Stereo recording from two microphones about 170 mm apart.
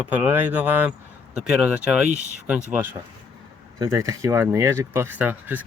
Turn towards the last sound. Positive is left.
turn(degrees=-10)  # may be behind; listen again after turning